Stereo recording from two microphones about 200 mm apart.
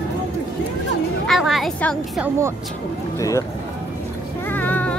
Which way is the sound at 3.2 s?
15° left (ahead or behind).